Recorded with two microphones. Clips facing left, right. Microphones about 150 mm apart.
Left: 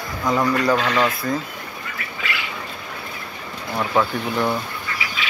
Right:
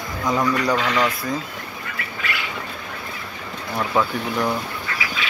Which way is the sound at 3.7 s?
5° left (ahead or behind).